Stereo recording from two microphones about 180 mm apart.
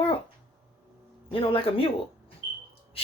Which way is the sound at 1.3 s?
30° left (ahead or behind).